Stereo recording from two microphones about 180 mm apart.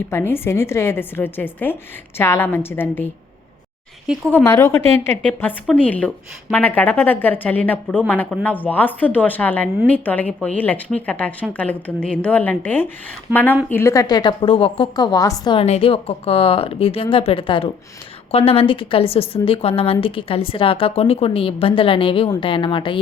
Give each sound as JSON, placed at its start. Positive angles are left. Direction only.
{"t": 0.1, "sound": "a woman's voice", "side_deg": 10}
{"t": 4.3, "sound": "a woman's voice", "side_deg": 10}
{"t": 15.5, "sound": "a woman's voice", "side_deg": 35}